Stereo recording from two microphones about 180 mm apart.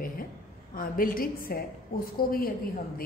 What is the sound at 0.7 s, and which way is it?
A woman's voice, 50° left (ahead or behind).